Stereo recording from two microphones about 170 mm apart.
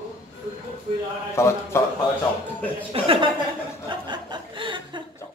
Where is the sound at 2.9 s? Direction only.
35° right (ahead or behind).